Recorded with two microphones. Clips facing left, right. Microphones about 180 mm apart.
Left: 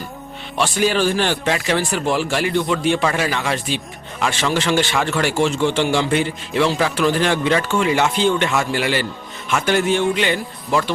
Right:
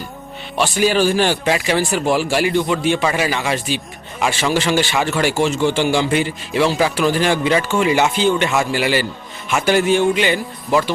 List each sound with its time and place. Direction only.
0.5 s a man's voice: 5° right (ahead or behind)